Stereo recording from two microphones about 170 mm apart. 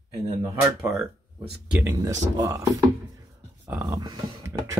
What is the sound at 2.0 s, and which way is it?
Speech, 20° right (ahead or behind).